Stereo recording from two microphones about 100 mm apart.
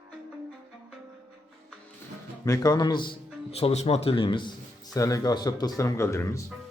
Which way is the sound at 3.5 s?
90° left.